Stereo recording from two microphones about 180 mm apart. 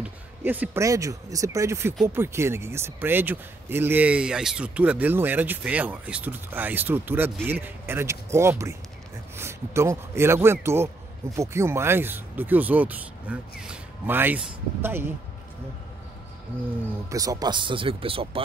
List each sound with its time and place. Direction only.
0.0 s speech: 10° right (ahead or behind)
17.1 s speech: 20° right (ahead or behind)